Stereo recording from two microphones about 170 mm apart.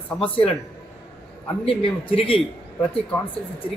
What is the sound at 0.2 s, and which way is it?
Speech, 35° left (ahead or behind).